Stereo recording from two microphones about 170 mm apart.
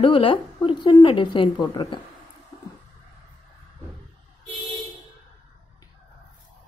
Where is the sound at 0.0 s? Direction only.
30° left (ahead or behind).